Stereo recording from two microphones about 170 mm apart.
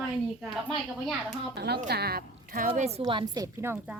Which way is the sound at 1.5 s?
75° right (ahead or behind).